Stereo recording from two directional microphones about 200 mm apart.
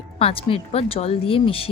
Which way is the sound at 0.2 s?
30° left (ahead or behind).